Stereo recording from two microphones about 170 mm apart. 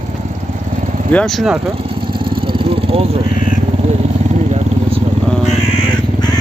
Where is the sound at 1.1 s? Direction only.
5° left (ahead or behind).